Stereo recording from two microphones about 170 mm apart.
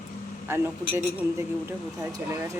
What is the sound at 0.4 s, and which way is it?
Speech, 15° right (ahead or behind).